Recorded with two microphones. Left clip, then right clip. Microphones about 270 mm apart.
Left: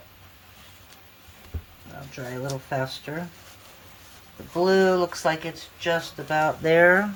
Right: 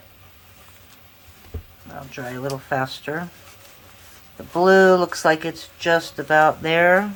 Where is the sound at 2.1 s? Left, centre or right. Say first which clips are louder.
Right 4 dB; centre.